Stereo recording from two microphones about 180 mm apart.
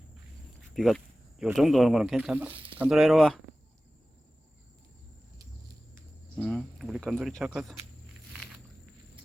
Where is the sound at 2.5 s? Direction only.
30° right (ahead or behind).